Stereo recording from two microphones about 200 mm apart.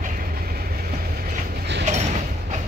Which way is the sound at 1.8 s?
35° right (ahead or behind).